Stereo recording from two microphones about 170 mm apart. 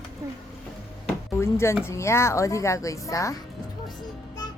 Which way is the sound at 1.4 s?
15° left (ahead or behind).